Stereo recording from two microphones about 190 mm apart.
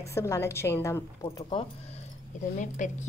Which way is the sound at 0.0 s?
15° left (ahead or behind).